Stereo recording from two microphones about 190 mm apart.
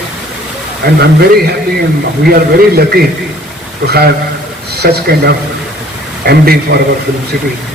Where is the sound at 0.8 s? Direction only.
55° right (ahead or behind).